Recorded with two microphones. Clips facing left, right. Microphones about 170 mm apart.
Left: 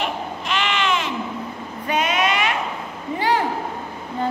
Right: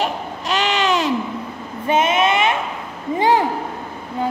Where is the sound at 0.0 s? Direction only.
40° right (ahead or behind).